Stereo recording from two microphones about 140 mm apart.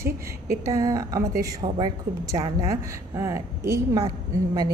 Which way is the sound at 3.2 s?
20° right (ahead or behind).